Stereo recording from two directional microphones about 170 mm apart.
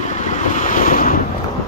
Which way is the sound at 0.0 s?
45° left (ahead or behind).